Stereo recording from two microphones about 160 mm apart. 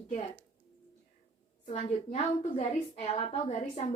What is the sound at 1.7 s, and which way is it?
A woman's voice, 40° left (ahead or behind).